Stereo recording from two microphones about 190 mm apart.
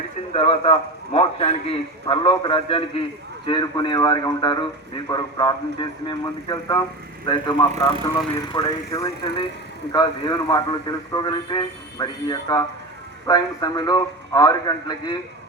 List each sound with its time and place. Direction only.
0.3 s speech: 30° left (ahead or behind)